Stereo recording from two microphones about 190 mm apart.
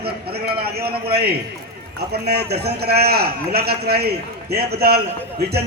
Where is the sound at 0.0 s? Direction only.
55° right (ahead or behind).